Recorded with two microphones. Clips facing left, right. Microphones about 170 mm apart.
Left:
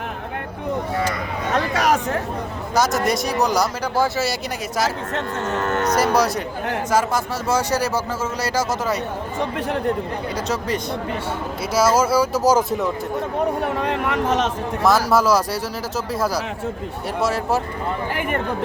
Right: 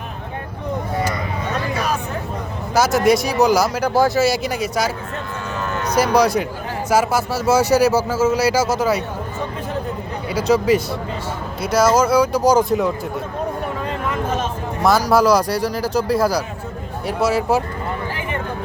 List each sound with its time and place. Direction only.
1.5 s a sound: 80° left
2.7 s speech: 5° right (ahead or behind)
5.1 s music: 75° left (ahead or behind)
5.6 s music: 45° left (ahead or behind)
6.0 s speech: centre (ahead or behind)
10.3 s speech: 5° right (ahead or behind)
13.8 s speech: 70° left (ahead or behind)
14.8 s speech: centre (ahead or behind)